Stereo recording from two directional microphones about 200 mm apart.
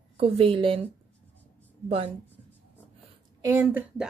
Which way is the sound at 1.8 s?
30° right (ahead or behind).